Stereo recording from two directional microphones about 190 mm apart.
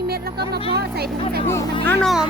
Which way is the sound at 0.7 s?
55° right (ahead or behind).